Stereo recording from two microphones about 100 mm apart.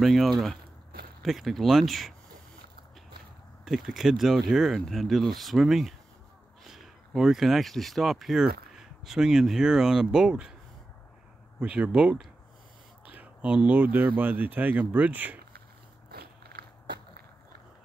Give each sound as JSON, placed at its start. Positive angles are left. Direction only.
{"t": 0.0, "sound": "speech", "side_deg": 0}
{"t": 3.6, "sound": "speech", "side_deg": 0}
{"t": 11.6, "sound": "speech", "side_deg": -10}